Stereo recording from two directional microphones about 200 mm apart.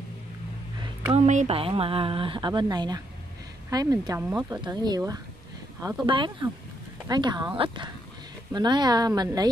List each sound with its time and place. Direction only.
1.1 s a woman's voice: 35° right (ahead or behind); by 4.2 s 20° right (ahead or behind)
4.2 s speech: 5° right (ahead or behind)
4.5 s a woman's voice: 20° right (ahead or behind)